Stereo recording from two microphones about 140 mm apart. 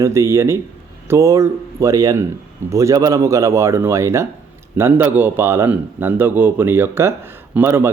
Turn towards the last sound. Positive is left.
turn(degrees=-15)  # may be behind; listen again after turning